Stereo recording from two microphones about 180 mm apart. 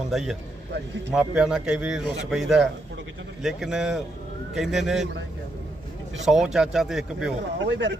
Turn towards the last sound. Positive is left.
turn(degrees=-90)